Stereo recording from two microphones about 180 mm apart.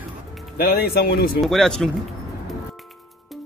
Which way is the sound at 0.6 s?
60° left (ahead or behind).